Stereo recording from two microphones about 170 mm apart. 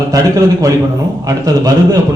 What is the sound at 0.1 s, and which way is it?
Speech, 20° right (ahead or behind).